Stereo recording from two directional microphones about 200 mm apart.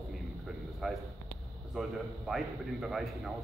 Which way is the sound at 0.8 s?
Centre (ahead or behind).